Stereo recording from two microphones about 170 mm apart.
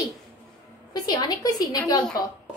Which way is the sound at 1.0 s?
25° left (ahead or behind).